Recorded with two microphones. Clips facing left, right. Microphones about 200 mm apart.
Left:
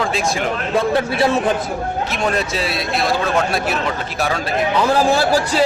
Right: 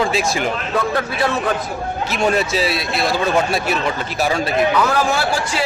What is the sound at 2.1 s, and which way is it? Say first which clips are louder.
A man's voice: right 5 dB; centre (ahead or behind).